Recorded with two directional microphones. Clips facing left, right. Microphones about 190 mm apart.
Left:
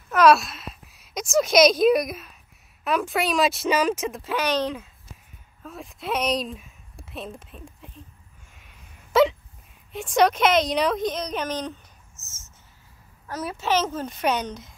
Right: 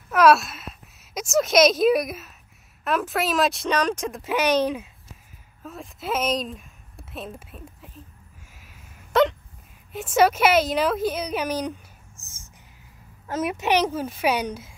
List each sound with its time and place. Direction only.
0.1 s a woman's voice: 5° right (ahead or behind)
4.2 s a woman's voice: 15° right (ahead or behind)
8.5 s a sound: centre (ahead or behind)
9.9 s speech: 5° right (ahead or behind)